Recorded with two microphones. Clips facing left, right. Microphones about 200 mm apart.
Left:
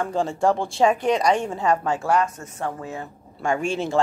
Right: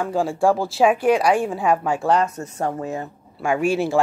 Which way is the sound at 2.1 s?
40° right (ahead or behind).